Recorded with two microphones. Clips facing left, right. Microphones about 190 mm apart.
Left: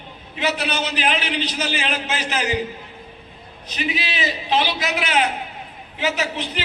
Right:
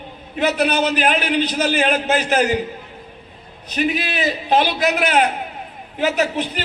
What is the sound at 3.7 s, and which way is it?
A man's voice, 50° right (ahead or behind).